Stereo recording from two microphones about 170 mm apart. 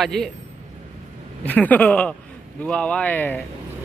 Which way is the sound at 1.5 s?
10° left (ahead or behind).